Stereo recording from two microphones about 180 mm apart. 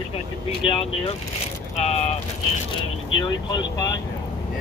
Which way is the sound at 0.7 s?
30° left (ahead or behind).